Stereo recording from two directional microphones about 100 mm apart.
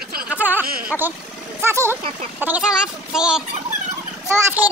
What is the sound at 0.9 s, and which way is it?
Speech, 15° left (ahead or behind).